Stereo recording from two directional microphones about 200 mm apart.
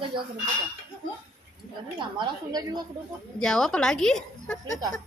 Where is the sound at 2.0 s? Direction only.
20° right (ahead or behind).